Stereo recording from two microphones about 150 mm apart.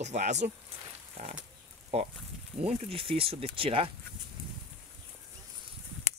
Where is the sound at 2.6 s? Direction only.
45° right (ahead or behind).